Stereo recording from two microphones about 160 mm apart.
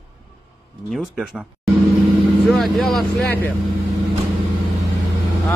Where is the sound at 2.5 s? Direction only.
Centre (ahead or behind).